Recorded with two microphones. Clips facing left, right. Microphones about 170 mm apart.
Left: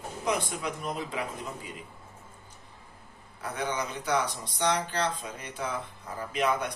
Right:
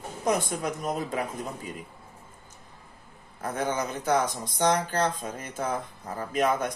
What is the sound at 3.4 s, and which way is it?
Speech, 45° right (ahead or behind).